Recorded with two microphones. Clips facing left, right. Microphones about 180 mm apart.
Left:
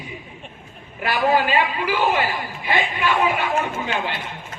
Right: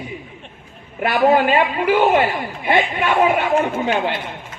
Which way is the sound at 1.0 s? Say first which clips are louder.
Right 5 dB; 55° right (ahead or behind).